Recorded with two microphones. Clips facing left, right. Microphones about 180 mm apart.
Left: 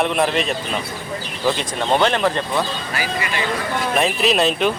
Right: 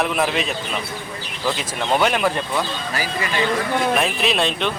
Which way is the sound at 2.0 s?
10° right (ahead or behind).